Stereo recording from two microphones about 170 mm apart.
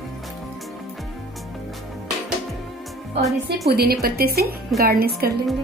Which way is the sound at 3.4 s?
65° right (ahead or behind).